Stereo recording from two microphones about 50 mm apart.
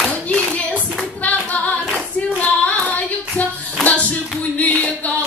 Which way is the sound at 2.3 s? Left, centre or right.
Left.